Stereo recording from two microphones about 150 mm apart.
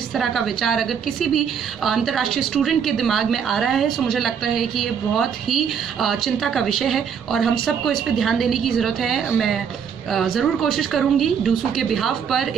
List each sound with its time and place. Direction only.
0.1 s a woman's voice: centre (ahead or behind)